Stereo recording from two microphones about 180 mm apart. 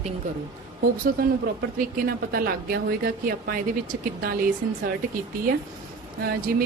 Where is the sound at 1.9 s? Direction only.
55° right (ahead or behind).